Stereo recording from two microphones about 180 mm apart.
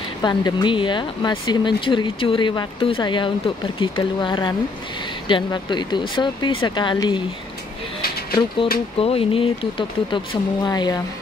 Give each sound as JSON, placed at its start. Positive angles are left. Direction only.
{"t": 0.2, "sound": "speech", "side_deg": 25}
{"t": 9.0, "sound": "speech", "side_deg": 30}